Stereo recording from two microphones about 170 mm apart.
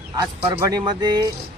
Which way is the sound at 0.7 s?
25° right (ahead or behind).